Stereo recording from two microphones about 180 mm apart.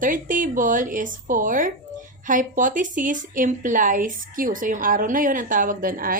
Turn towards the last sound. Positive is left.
turn(degrees=-50)  # may be behind; listen again after turning